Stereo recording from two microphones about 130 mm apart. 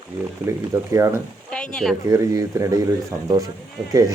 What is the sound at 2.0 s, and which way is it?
A man's voice, 25° right (ahead or behind).